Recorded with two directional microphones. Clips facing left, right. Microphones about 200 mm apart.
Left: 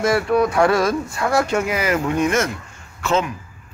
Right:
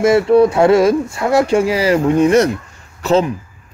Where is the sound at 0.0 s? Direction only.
25° right (ahead or behind).